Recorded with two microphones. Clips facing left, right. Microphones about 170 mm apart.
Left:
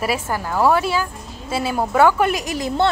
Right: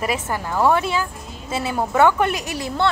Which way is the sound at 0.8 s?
20° right (ahead or behind).